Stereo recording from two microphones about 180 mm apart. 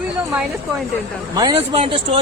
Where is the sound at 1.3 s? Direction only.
30° right (ahead or behind).